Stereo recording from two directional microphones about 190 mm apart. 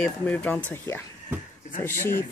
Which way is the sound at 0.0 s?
10° left (ahead or behind).